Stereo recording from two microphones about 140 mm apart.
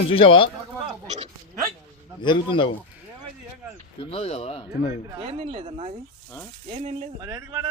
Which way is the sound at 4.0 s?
45° left (ahead or behind).